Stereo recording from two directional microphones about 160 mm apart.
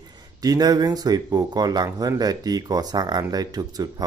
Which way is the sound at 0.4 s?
25° right (ahead or behind).